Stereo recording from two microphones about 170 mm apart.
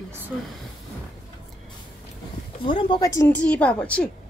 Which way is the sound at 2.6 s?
30° left (ahead or behind).